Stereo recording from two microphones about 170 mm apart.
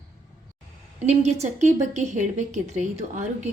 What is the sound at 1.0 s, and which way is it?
A woman's voice, 40° right (ahead or behind).